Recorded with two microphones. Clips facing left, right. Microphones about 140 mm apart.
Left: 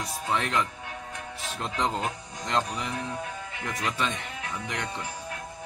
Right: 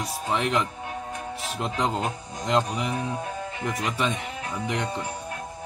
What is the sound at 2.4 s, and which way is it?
Speech, 15° right (ahead or behind).